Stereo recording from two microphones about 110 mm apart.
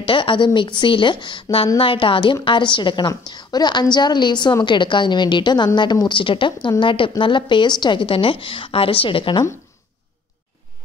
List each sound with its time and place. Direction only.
0.0 s a woman's voice: 50° left (ahead or behind)